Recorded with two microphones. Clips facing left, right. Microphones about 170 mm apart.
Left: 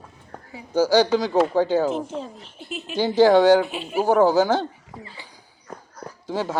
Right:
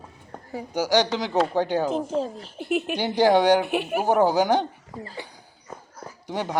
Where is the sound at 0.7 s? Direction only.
15° right (ahead or behind).